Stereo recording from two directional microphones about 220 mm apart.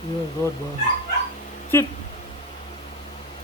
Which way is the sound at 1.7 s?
10° left (ahead or behind).